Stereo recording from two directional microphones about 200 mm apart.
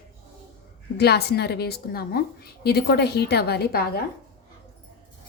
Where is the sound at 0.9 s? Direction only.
55° left (ahead or behind).